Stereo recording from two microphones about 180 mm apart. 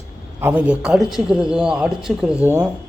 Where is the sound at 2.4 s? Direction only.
15° right (ahead or behind).